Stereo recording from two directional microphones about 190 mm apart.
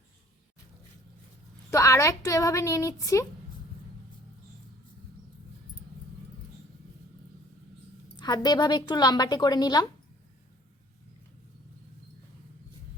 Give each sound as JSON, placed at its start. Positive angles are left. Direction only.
{"t": 1.7, "sound": "a woman's voice", "side_deg": 15}
{"t": 8.1, "sound": "a woman's voice", "side_deg": 20}